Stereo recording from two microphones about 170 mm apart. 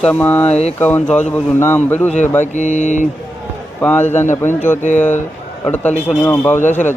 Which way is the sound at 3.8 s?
10° left (ahead or behind).